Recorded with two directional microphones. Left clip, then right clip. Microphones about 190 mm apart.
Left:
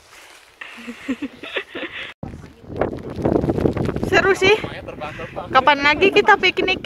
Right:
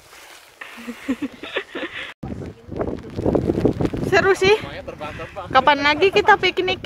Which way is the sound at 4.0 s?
Centre (ahead or behind).